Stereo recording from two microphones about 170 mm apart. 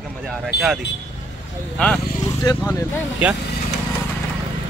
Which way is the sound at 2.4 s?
20° left (ahead or behind).